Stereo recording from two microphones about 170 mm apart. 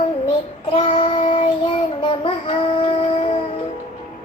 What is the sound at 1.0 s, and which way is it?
Child singing, 30° left (ahead or behind).